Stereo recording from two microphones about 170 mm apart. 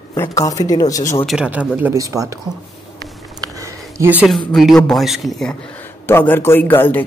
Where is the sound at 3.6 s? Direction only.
15° right (ahead or behind).